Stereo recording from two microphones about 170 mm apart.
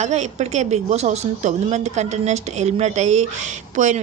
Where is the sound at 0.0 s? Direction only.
40° right (ahead or behind).